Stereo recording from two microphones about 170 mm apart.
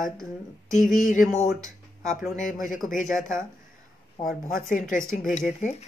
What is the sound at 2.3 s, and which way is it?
Speech, 50° left (ahead or behind).